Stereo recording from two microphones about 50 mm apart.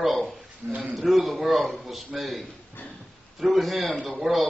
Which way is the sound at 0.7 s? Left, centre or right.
Right.